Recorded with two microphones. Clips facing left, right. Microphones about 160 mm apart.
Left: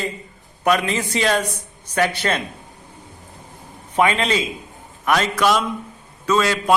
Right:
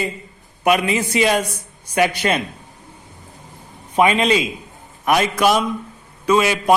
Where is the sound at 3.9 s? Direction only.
15° right (ahead or behind).